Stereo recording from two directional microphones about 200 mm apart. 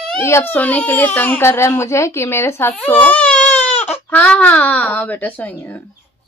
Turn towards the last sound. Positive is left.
turn(degrees=10)  # may be behind; listen again after turning